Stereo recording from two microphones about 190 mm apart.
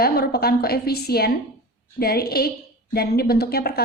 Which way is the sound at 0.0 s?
55° left (ahead or behind).